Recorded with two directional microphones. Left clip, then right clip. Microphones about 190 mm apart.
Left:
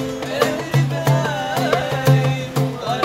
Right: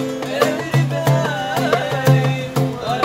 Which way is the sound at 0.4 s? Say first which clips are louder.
Right 1 dB; 40° right (ahead or behind).